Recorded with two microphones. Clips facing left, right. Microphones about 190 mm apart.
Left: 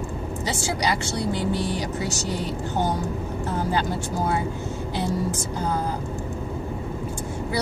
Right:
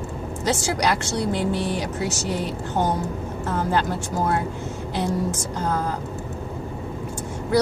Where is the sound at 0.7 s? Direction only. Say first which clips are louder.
Right 2 dB; 65° right (ahead or behind).